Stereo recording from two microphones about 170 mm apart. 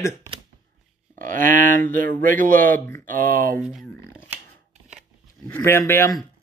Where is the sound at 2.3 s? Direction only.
50° right (ahead or behind).